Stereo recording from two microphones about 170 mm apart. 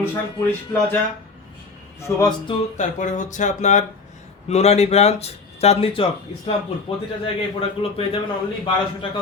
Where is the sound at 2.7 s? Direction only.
45° left (ahead or behind).